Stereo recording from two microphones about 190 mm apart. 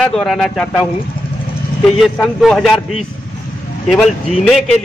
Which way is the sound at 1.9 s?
Centre (ahead or behind).